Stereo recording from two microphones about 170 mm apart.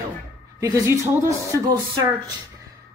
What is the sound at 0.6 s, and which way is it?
Speech, 20° right (ahead or behind).